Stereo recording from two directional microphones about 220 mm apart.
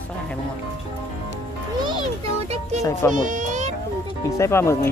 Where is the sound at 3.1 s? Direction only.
35° right (ahead or behind).